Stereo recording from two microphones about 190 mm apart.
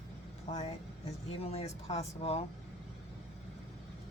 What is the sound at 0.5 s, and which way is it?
Speech, 35° left (ahead or behind).